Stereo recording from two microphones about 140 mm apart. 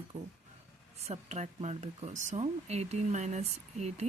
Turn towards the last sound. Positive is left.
turn(degrees=-50)  # may be behind; listen again after turning